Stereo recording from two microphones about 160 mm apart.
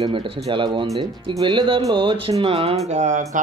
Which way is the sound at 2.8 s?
50° right (ahead or behind).